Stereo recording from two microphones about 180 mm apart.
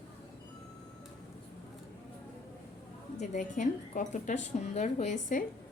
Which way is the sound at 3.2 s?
45° left (ahead or behind).